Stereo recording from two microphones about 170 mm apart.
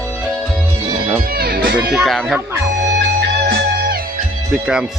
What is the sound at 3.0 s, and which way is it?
Music, 80° right.